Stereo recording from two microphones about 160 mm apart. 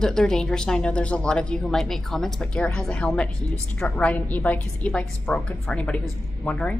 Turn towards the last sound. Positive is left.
turn(degrees=10)  # may be behind; listen again after turning